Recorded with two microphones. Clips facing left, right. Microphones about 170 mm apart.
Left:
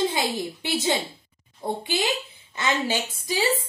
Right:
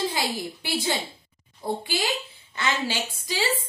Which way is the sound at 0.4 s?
20° left (ahead or behind).